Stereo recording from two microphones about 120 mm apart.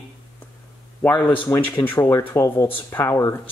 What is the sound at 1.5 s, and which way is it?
Speech, 20° left (ahead or behind).